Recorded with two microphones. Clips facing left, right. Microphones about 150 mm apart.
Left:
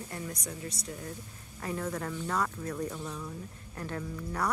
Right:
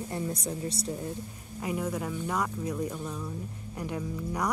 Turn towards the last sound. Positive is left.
turn(degrees=-15)  # may be behind; listen again after turning